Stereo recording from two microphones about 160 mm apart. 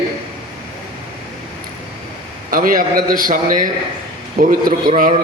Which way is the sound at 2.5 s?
60° right (ahead or behind).